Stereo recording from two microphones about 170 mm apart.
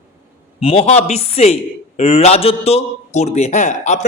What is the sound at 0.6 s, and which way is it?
A man's voice, 35° left (ahead or behind).